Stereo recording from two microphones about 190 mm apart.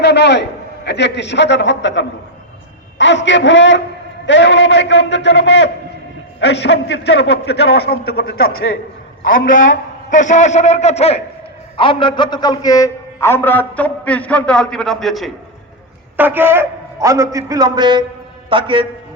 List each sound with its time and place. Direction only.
0.0 s a sound: 65° left (ahead or behind)
0.9 s a man's voice: 65° left (ahead or behind); by 15.3 s centre (ahead or behind)
16.1 s a man's voice: 10° right (ahead or behind); by 18.9 s 25° right (ahead or behind)